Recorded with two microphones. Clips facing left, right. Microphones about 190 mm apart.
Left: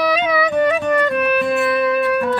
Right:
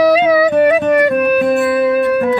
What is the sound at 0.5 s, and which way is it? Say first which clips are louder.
Music: right 5 dB; 60° right (ahead or behind).